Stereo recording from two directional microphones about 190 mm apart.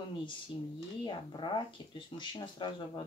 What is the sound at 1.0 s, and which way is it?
Speech, 25° left (ahead or behind).